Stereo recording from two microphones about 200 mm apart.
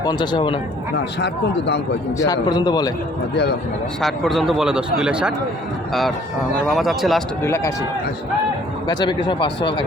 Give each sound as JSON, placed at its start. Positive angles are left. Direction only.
{"t": 0.0, "sound": "a man's voice", "side_deg": 20}
{"t": 1.2, "sound": "speech", "side_deg": 60}
{"t": 2.1, "sound": "a man's voice", "side_deg": 15}
{"t": 4.0, "sound": "a man's voice", "side_deg": 0}
{"t": 7.4, "sound": "speech", "side_deg": 15}
{"t": 8.9, "sound": "a man's voice", "side_deg": 20}